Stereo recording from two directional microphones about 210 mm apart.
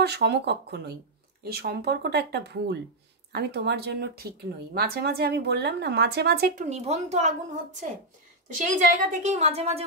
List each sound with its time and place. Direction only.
0.0 s a woman's voice: 50° right (ahead or behind); by 9.8 s 30° right (ahead or behind)